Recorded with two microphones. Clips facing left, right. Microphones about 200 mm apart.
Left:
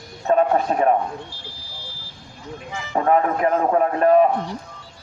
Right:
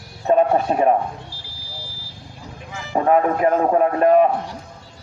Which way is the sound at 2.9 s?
10° right (ahead or behind).